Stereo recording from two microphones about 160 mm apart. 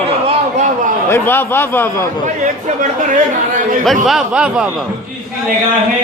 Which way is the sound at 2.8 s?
55° right (ahead or behind).